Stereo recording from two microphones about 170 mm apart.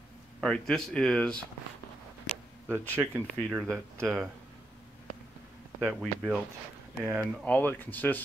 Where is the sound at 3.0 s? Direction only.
10° right (ahead or behind).